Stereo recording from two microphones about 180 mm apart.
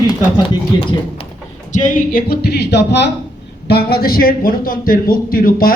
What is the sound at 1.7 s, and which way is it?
A man's voice, 45° left (ahead or behind).